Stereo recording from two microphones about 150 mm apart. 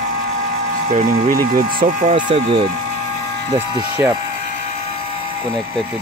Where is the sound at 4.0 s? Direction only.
15° right (ahead or behind).